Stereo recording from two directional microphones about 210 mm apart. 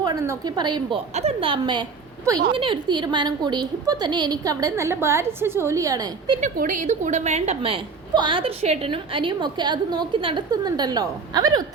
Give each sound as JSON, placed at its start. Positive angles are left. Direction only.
{"t": 0.0, "sound": "a woman's voice", "side_deg": -15}
{"t": 6.4, "sound": "a woman's voice", "side_deg": -40}